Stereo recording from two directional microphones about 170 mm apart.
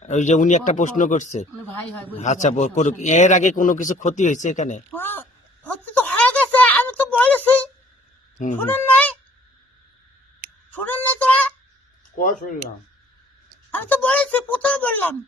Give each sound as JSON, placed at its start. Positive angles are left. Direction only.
{"t": 0.0, "sound": "speech", "side_deg": 45}
{"t": 1.8, "sound": "speech", "side_deg": 5}
{"t": 2.1, "sound": "speech", "side_deg": 40}
{"t": 4.9, "sound": "a sound", "side_deg": 10}
{"t": 8.5, "sound": "a child's voice", "side_deg": 10}
{"t": 10.7, "sound": "a sound", "side_deg": 10}
{"t": 12.2, "sound": "speech", "side_deg": 50}
{"t": 13.7, "sound": "speech", "side_deg": 10}